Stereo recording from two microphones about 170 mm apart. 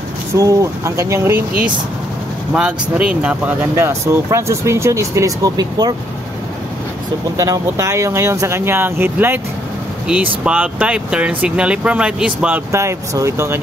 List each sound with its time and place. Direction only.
0.4 s speech: 20° right (ahead or behind)
7.3 s speech: 20° right (ahead or behind)